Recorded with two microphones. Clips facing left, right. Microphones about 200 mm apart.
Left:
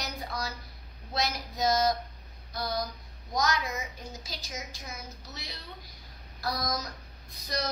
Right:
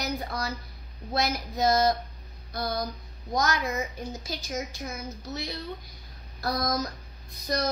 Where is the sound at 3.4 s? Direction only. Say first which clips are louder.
Right 3 dB; 55° right (ahead or behind).